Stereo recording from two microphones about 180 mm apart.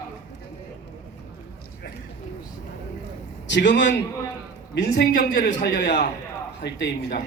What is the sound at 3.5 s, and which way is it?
Speech, 80° left.